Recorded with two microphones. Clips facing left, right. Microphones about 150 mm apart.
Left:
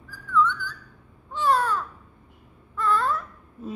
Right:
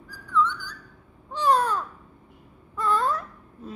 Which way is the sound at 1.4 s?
20° right (ahead or behind).